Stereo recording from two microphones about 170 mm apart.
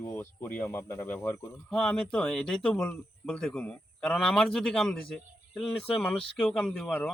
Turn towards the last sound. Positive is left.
turn(degrees=0)  # may be behind; listen again after turning